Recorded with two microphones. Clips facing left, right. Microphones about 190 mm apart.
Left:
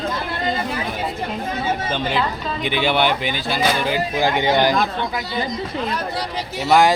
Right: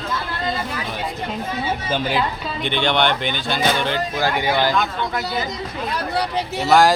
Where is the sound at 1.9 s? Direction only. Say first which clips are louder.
Even; 5° right (ahead or behind); by 4.7 s 20° left (ahead or behind).